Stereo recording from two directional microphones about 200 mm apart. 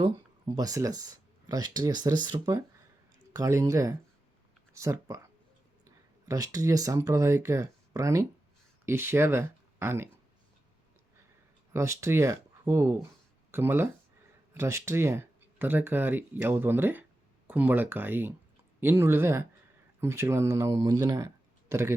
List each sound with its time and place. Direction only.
0.0 s speech: 20° right (ahead or behind)
11.7 s speech: 15° right (ahead or behind)